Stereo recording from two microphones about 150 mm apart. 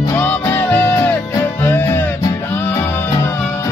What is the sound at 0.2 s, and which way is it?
Music, 10° left (ahead or behind).